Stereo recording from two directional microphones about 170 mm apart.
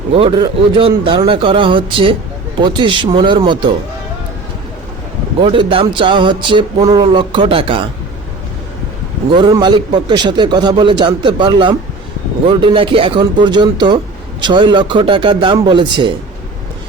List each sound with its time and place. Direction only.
0.1 s speech: 30° right (ahead or behind)
5.4 s speech: 30° right (ahead or behind)
9.3 s speech: 25° right (ahead or behind)